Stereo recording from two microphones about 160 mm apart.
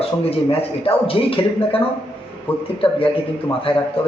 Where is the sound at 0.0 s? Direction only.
35° left (ahead or behind).